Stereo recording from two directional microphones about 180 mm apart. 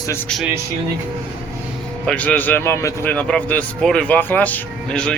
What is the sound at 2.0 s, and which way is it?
A man's voice, 10° left (ahead or behind).